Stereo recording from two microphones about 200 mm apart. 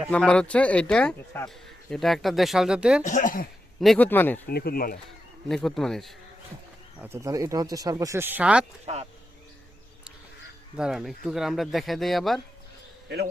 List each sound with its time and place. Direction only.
0.1 s speech: 5° left (ahead or behind)
3.0 s speech: 40° left (ahead or behind)
3.8 s a man's voice: 5° left (ahead or behind)
4.4 s speech: 50° left (ahead or behind)
5.5 s speech: centre (ahead or behind)
7.0 s speech: 15° right (ahead or behind)
10.8 s speech: 5° right (ahead or behind)